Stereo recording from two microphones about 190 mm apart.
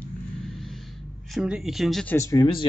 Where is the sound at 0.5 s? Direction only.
Centre (ahead or behind).